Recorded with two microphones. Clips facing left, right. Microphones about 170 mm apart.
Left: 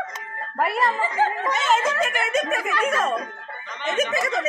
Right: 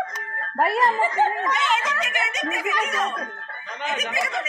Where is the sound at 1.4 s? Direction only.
40° left (ahead or behind).